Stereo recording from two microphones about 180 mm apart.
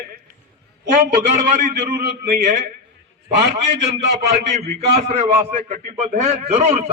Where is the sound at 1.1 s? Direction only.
45° right (ahead or behind).